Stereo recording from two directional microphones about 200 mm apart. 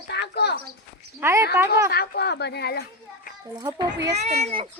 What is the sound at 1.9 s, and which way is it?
Speech, 50° left (ahead or behind).